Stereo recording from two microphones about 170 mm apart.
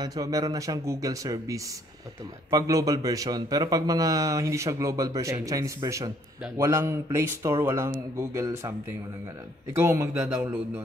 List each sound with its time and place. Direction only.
0.0 s a man's voice: 20° right (ahead or behind)